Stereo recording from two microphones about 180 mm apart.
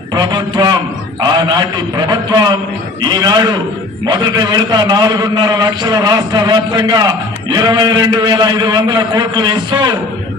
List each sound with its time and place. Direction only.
0.1 s a man's voice: 25° right (ahead or behind)